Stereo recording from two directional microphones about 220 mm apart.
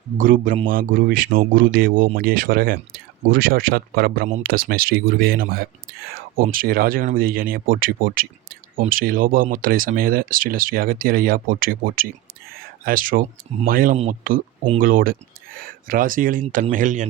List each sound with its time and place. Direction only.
0.2 s speech: 40° right (ahead or behind)